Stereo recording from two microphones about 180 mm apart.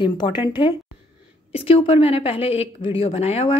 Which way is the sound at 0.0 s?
25° left (ahead or behind).